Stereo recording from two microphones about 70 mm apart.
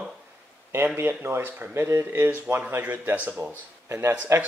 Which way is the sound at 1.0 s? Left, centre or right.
Right.